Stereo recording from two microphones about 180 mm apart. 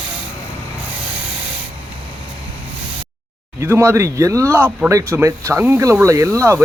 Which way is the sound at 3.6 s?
15° right (ahead or behind).